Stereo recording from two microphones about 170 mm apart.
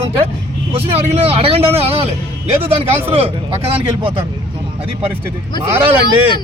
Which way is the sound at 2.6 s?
10° right (ahead or behind).